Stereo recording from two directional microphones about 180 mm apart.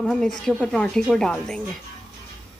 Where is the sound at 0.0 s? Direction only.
5° left (ahead or behind).